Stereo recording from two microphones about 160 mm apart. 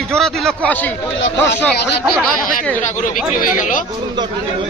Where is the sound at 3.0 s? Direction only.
55° left (ahead or behind).